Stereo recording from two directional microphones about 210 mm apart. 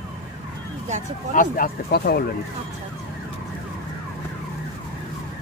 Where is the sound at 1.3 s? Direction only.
40° left (ahead or behind).